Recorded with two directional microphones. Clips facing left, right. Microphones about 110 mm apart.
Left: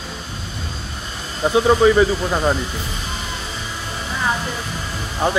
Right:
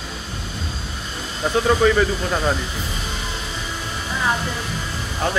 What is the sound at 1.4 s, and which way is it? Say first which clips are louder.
Speech: left 3 dB; 15° left (ahead or behind).